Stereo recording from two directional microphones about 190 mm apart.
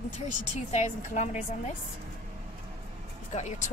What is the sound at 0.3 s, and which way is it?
Speech, 40° left (ahead or behind).